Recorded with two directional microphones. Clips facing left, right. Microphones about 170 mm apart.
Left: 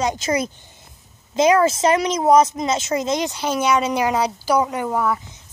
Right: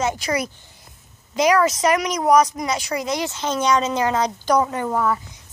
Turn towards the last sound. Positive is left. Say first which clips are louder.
# even
turn(degrees=10)  # may be behind; listen again after turning